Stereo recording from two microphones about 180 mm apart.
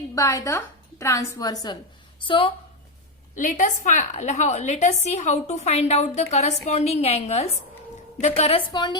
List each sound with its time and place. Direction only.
0.1 s a woman's voice: 20° left (ahead or behind)
3.3 s a woman's voice: 45° left (ahead or behind); by 9.0 s 25° left (ahead or behind)